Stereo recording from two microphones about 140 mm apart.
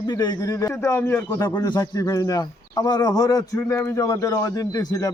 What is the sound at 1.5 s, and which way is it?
Speech, 30° left (ahead or behind).